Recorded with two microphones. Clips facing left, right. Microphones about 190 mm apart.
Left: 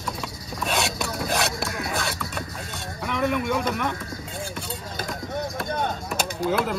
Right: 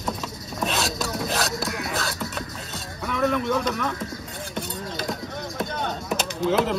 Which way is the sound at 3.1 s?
10° left (ahead or behind).